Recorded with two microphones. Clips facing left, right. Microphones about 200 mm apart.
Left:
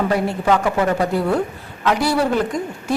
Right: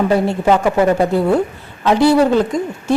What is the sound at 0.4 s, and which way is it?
Speech, 25° right (ahead or behind).